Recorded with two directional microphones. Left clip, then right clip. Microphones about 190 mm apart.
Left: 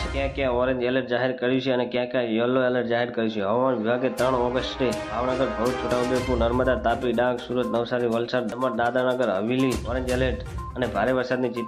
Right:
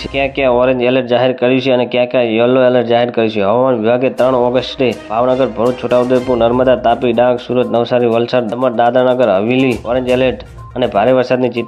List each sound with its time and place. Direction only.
0.2 s speech: 35° right (ahead or behind)
6.6 s speech: 35° right (ahead or behind)